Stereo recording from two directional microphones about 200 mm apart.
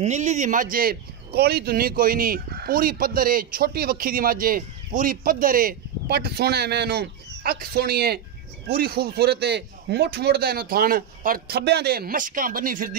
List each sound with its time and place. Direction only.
0.0 s speech: 35° right (ahead or behind)